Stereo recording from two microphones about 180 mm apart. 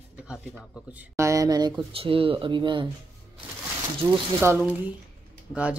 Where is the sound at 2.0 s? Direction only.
30° right (ahead or behind).